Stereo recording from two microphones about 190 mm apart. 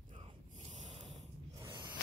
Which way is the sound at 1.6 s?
20° right (ahead or behind).